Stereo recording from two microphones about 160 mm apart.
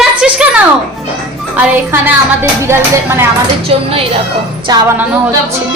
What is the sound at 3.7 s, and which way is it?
Speech, 35° right (ahead or behind).